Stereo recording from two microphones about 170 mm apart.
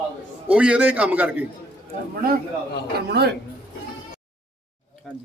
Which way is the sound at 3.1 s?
70° right (ahead or behind).